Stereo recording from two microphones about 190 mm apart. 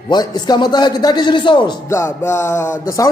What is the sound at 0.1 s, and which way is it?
A man's voice, 20° left (ahead or behind).